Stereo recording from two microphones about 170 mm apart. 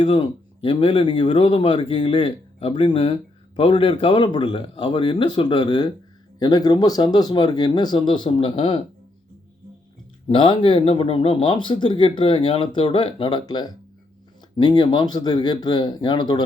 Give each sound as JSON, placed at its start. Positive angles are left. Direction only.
{"t": 0.0, "sound": "speech", "side_deg": 30}
{"t": 10.2, "sound": "speech", "side_deg": 30}